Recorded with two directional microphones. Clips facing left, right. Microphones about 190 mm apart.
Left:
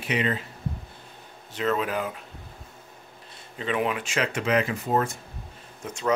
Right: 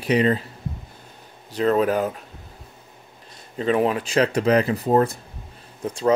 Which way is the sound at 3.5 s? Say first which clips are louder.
Right 6 dB; 40° right (ahead or behind).